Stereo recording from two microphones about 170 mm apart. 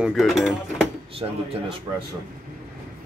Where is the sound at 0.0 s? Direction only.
Centre (ahead or behind).